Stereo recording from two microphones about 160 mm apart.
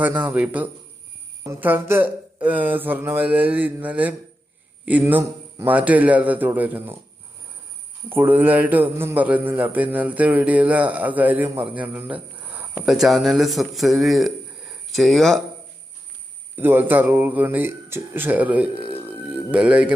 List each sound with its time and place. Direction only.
0.0 s mantra: 10° right (ahead or behind)
8.1 s mantra: 15° right (ahead or behind)
11.5 s speech: 10° right (ahead or behind)
16.6 s mantra: 10° right (ahead or behind)
18.7 s music: 35° right (ahead or behind)
19.0 s music: 10° right (ahead or behind)